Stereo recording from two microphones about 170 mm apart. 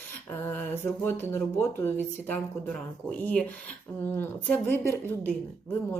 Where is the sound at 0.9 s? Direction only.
15° left (ahead or behind).